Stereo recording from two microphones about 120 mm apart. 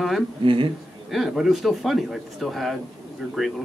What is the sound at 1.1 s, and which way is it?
Speech, 5° right (ahead or behind).